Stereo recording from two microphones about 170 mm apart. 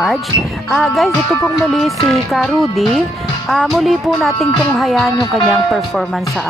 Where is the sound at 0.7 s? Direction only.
Centre (ahead or behind).